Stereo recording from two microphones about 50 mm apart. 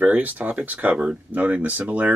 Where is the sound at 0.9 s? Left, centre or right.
Centre.